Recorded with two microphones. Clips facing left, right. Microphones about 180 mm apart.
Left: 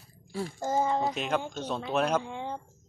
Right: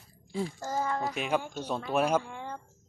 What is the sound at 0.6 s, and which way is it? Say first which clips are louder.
Speech: left 7 dB; 20° left (ahead or behind).